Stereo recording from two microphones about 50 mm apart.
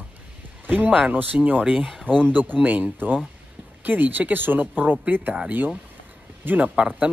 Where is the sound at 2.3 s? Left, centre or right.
Right.